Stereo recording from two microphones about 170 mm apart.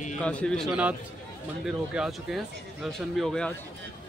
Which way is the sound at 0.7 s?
10° right (ahead or behind).